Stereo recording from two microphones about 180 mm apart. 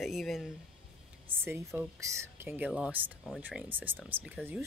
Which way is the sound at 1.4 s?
15° right (ahead or behind).